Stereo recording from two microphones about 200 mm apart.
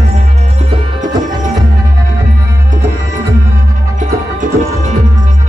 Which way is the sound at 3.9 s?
35° right (ahead or behind).